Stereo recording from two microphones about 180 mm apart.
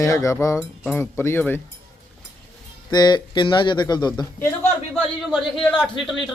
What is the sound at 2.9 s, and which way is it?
Speech, 25° left (ahead or behind).